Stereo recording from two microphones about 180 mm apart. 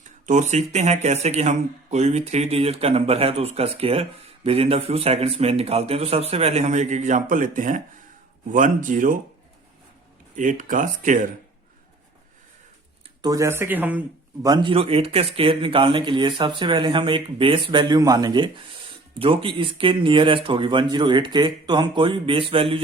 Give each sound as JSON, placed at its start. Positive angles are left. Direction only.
{"t": 0.3, "sound": "speech", "side_deg": -40}
{"t": 10.3, "sound": "speech", "side_deg": -45}
{"t": 13.2, "sound": "speech", "side_deg": -20}
{"t": 14.4, "sound": "speech", "side_deg": -25}